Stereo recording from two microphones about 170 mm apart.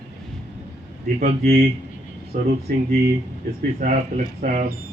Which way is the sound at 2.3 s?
50° right (ahead or behind).